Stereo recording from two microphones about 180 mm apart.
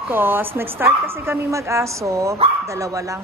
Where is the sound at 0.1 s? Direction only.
10° right (ahead or behind).